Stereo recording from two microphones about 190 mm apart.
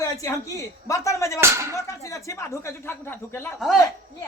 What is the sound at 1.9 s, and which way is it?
A man's voice, 15° left (ahead or behind).